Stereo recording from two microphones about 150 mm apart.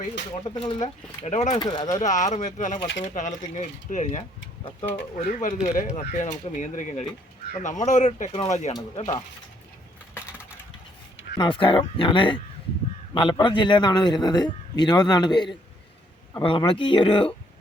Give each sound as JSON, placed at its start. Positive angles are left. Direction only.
{"t": 0.3, "sound": "speech", "side_deg": 40}
{"t": 1.2, "sound": "speech", "side_deg": 50}
{"t": 1.5, "sound": "a man's voice", "side_deg": 30}
{"t": 2.0, "sound": "speech", "side_deg": 55}
{"t": 5.1, "sound": "speech", "side_deg": 65}
{"t": 8.7, "sound": "a man's voice", "side_deg": 25}
{"t": 11.3, "sound": "a man's voice", "side_deg": 35}